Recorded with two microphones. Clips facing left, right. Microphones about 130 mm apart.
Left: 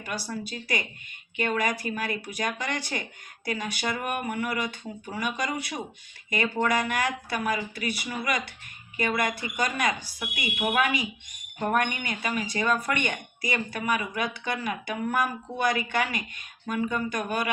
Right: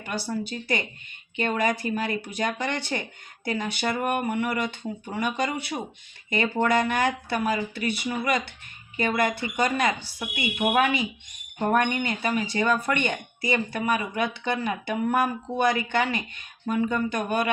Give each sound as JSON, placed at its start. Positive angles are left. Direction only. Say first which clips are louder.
{"t": 0.1, "sound": "speech", "louder": "right 4 dB", "side_deg": -25}